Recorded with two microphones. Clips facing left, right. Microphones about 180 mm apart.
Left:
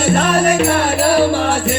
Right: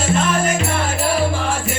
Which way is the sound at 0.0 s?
65° left (ahead or behind).